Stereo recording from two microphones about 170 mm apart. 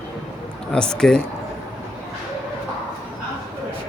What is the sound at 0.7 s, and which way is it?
Speech, 5° left (ahead or behind).